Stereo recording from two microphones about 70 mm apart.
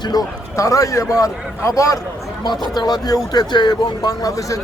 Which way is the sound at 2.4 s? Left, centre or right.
Left.